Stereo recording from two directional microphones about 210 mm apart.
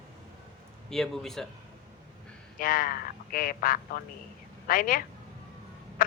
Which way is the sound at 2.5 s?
40° left (ahead or behind).